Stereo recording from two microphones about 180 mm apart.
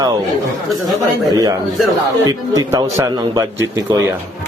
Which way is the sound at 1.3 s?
20° right (ahead or behind).